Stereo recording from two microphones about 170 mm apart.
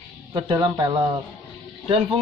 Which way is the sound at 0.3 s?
25° right (ahead or behind).